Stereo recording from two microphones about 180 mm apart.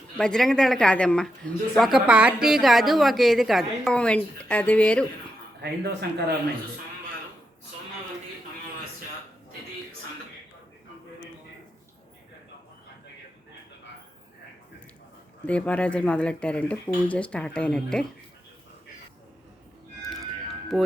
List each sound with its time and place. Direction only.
0.2 s speech: 5° left (ahead or behind)
5.6 s speech: 65° right (ahead or behind)
15.4 s speech: 5° left (ahead or behind)
20.7 s speech: centre (ahead or behind)